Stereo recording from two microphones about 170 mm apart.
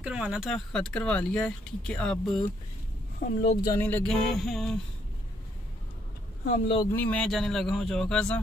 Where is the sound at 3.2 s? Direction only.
65° left (ahead or behind).